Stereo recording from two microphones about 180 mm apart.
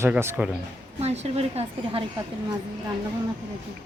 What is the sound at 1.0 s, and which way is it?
A woman's voice, 35° right (ahead or behind).